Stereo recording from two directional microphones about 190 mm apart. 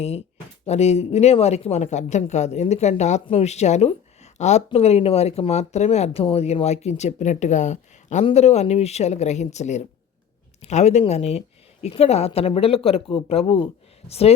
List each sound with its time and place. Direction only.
0.6 s speech: 35° left (ahead or behind)